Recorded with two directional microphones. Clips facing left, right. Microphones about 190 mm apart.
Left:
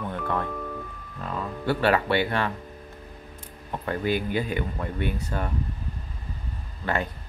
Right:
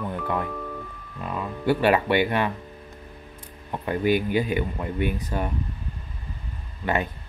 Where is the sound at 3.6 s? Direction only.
15° right (ahead or behind).